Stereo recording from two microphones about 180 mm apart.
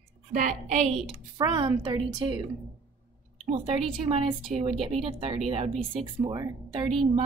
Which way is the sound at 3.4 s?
35° right (ahead or behind).